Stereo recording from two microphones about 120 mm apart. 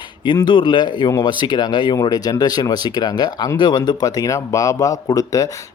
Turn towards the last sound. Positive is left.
turn(degrees=30)  # may be behind; listen again after turning